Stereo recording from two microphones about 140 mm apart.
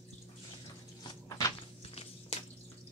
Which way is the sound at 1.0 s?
25° left (ahead or behind).